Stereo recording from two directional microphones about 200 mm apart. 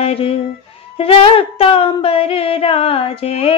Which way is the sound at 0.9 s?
25° left (ahead or behind).